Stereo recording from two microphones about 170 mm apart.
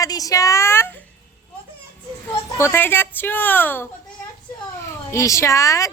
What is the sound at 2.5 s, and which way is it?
Speech, 15° left (ahead or behind).